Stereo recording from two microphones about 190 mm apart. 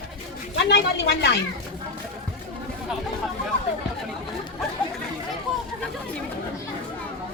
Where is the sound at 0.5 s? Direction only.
60° left (ahead or behind).